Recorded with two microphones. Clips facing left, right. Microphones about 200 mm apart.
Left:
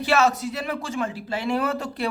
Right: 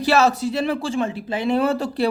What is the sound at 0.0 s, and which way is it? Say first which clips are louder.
Speech: right 3 dB; 35° right (ahead or behind).